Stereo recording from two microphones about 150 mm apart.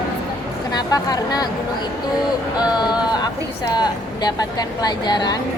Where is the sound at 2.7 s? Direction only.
30° left (ahead or behind).